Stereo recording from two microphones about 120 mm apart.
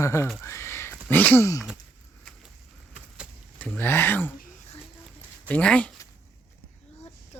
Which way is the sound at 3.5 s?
10° left (ahead or behind).